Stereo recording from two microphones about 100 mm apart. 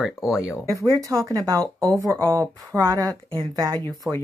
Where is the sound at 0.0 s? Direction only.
5° right (ahead or behind).